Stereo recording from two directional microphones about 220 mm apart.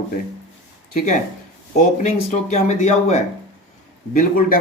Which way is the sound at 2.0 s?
30° left (ahead or behind).